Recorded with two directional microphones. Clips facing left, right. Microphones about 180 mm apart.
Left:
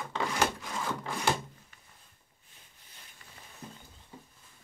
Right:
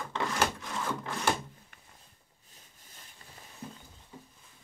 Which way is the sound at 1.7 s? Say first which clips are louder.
Right 2 dB; 55° right (ahead or behind).